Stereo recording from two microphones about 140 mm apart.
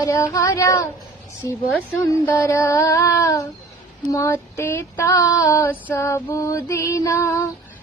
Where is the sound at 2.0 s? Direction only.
20° left (ahead or behind).